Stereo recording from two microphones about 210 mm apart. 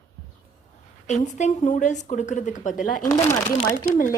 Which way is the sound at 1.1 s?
35° left (ahead or behind).